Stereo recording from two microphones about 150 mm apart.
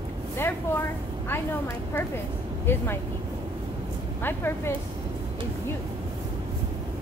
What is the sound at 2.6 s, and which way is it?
Speech, 15° left (ahead or behind).